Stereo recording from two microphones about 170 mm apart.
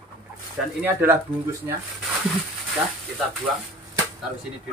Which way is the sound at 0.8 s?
15° right (ahead or behind).